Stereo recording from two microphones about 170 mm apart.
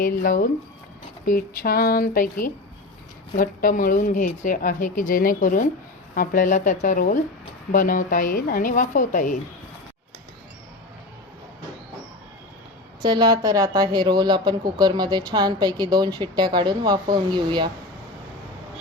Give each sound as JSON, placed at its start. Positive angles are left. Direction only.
{"t": 0.0, "sound": "speech", "side_deg": 55}
{"t": 13.0, "sound": "speech", "side_deg": -25}